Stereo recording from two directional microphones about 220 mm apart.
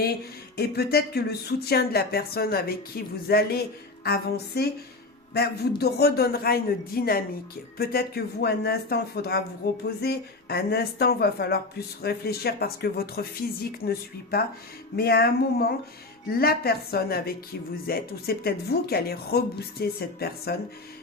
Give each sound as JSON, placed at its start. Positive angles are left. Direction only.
{"t": 0.5, "sound": "speech", "side_deg": 45}
{"t": 5.8, "sound": "speech", "side_deg": 45}